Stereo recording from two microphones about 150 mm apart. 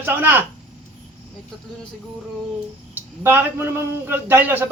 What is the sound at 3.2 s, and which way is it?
A man's voice, 15° right (ahead or behind).